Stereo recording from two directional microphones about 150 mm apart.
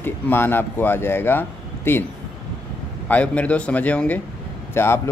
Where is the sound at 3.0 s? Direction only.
10° left (ahead or behind).